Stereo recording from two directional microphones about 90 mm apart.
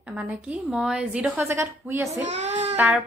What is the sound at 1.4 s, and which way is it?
A woman's voice, 30° right (ahead or behind).